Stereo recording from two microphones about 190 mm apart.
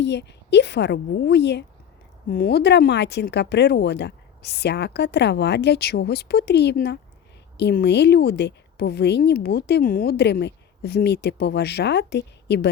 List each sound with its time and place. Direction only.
0.0 s a woman's voice: 65° left (ahead or behind)